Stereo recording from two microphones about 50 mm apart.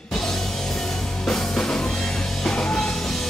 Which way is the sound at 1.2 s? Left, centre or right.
Centre.